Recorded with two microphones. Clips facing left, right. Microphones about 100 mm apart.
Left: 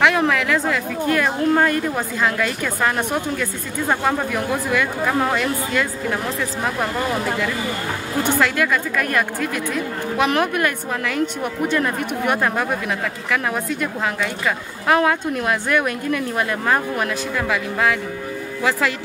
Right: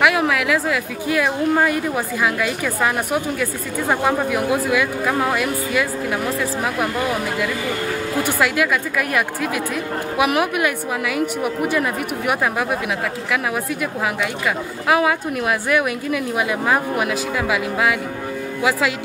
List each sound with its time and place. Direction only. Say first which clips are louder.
0.0 s a woman's voice: even; 5° right (ahead or behind)
8.4 s a woman's voice: right 1 dB; 10° right (ahead or behind)
14.9 s a woman's voice: left 1 dB; 5° right (ahead or behind)